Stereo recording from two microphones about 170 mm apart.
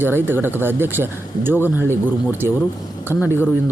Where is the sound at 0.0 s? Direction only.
10° right (ahead or behind).